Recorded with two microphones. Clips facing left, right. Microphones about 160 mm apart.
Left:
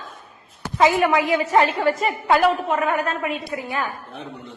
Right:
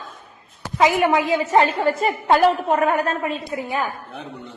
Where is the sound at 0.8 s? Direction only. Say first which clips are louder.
Even; 20° right (ahead or behind); by 3.3 s 35° right (ahead or behind).